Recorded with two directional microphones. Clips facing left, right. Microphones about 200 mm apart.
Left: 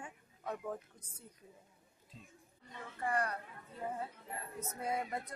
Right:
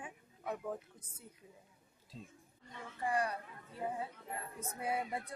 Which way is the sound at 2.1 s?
30° right (ahead or behind).